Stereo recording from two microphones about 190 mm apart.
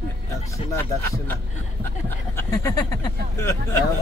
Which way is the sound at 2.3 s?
15° left (ahead or behind).